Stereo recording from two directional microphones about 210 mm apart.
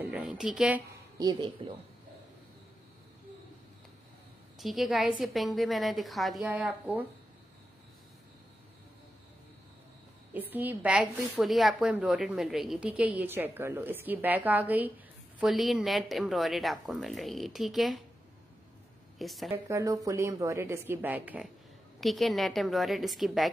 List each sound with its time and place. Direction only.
0.0 s a woman's voice: 5° right (ahead or behind)
1.2 s speech: 20° right (ahead or behind)
4.6 s speech: centre (ahead or behind)
10.3 s a woman's voice: 10° right (ahead or behind)
19.1 s a woman's voice: centre (ahead or behind)
19.5 s a woman's voice: 15° right (ahead or behind)